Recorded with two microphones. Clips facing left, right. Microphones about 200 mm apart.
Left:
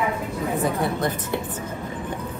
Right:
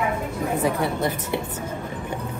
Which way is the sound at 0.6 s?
10° right (ahead or behind).